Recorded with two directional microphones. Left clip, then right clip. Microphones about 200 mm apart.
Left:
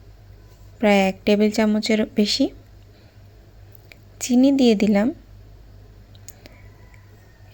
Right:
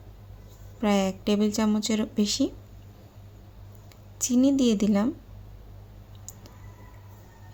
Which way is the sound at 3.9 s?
20° left (ahead or behind).